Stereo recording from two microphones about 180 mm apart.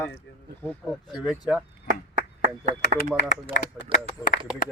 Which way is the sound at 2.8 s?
70° left (ahead or behind).